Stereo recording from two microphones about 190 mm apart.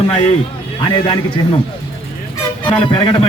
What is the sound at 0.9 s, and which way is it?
Speech, 25° left (ahead or behind).